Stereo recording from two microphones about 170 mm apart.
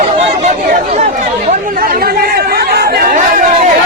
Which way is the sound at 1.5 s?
60° right (ahead or behind).